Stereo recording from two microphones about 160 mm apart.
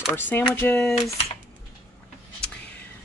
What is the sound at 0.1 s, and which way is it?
Speech, 10° left (ahead or behind).